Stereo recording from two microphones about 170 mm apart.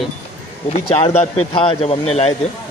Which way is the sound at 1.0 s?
40° left (ahead or behind).